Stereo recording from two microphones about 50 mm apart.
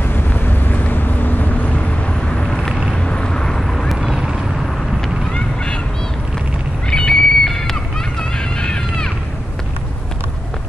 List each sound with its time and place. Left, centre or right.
0.1 s vehicle: left
2.2 s vehicle: centre
3.9 s vehicle: centre
6.9 s a sound: centre
8.2 s music: centre